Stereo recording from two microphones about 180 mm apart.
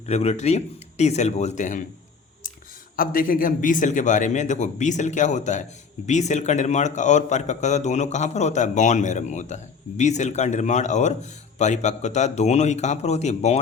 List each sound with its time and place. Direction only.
0.0 s speech: 35° left (ahead or behind)
2.9 s a man's voice: 55° left (ahead or behind); by 13.6 s 35° left (ahead or behind)